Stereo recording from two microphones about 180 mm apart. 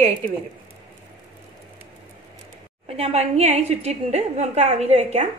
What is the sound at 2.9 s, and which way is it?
A woman's voice, 35° right (ahead or behind).